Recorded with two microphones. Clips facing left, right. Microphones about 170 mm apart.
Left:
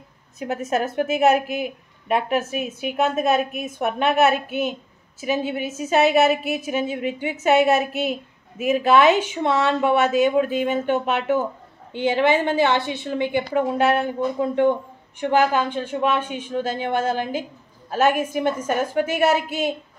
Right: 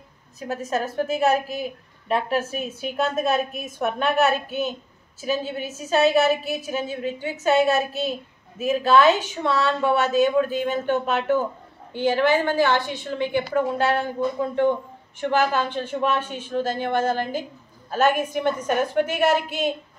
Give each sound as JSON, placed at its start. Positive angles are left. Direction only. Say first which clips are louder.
{"t": 0.5, "sound": "a woman's voice", "louder": "left 3 dB", "side_deg": 20}
{"t": 5.2, "sound": "a woman's voice", "louder": "left 2 dB", "side_deg": 15}